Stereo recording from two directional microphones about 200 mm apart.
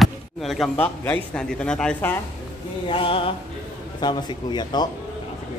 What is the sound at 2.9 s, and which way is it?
Speech, 25° left (ahead or behind).